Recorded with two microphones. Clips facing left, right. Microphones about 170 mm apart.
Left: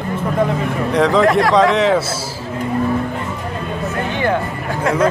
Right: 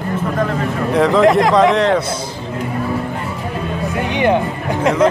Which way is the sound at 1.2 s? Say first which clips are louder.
Right 2 dB; 20° right (ahead or behind).